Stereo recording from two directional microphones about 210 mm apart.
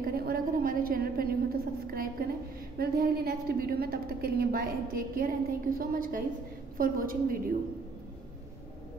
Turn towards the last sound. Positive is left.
turn(degrees=-45)  # may be behind; listen again after turning